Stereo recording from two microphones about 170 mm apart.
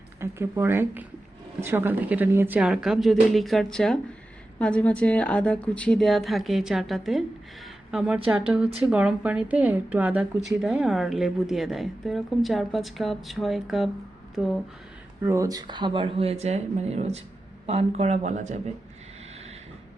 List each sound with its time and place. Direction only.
0.2 s a woman's voice: 15° right (ahead or behind)
15.2 s speech: 15° right (ahead or behind); by 18.7 s 45° right (ahead or behind)